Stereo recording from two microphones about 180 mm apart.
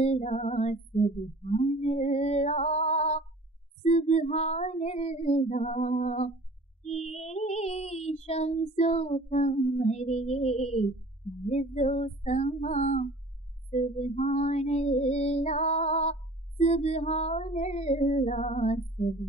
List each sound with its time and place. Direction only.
0.0 s music: 40° left (ahead or behind)
3.8 s female singing: 35° left (ahead or behind)
7.1 s child singing: 40° left (ahead or behind)
11.4 s female singing: 35° left (ahead or behind)